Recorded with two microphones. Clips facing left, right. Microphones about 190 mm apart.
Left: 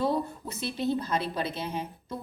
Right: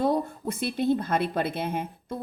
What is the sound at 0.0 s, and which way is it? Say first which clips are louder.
A woman's voice: right 3 dB; 50° right (ahead or behind).